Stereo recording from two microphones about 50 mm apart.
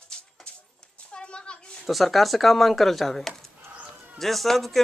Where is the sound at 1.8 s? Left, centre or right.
Centre.